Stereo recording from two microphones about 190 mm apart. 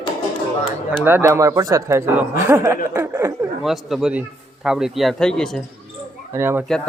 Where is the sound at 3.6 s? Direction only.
Centre (ahead or behind).